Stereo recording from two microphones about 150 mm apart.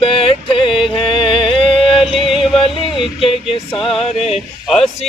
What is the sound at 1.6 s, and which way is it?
Yodeling, 35° left (ahead or behind).